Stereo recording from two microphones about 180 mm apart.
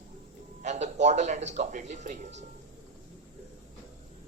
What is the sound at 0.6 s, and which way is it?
A man's voice, 40° right (ahead or behind).